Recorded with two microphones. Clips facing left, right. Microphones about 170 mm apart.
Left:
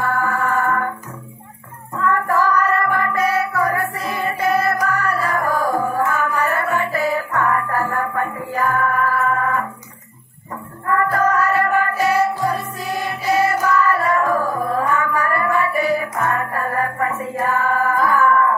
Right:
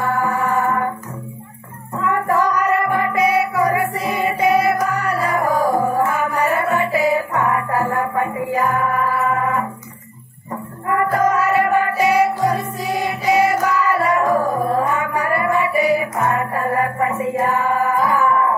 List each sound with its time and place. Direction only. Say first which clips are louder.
0.0 s music: right 1 dB; 15° right (ahead or behind)
2.0 s music: even; 15° right (ahead or behind)
10.9 s music: right 1 dB; 20° right (ahead or behind)
13.7 s music: even; 15° right (ahead or behind)
17.4 s music: even; 30° right (ahead or behind)
17.6 s music: right 1 dB; 15° right (ahead or behind)